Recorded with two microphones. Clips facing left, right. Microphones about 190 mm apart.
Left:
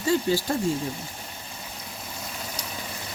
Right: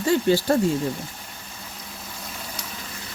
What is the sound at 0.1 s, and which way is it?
Speech, 65° right (ahead or behind).